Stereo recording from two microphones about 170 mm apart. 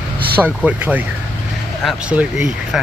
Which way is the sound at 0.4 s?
10° right (ahead or behind).